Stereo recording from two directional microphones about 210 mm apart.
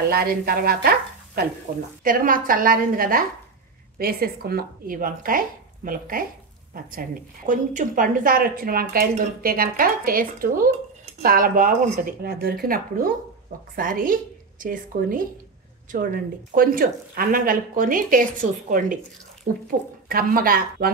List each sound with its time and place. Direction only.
0.1 s stir: 45° right (ahead or behind)
2.0 s a woman's voice: 40° right (ahead or behind)